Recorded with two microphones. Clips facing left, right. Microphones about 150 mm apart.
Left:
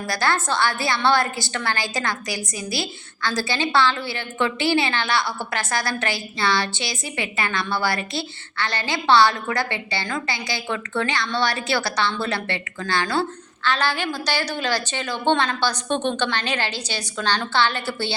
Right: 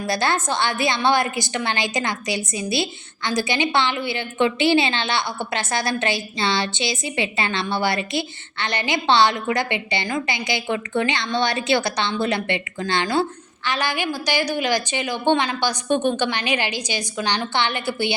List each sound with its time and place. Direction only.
0.1 s a woman's voice: 20° right (ahead or behind)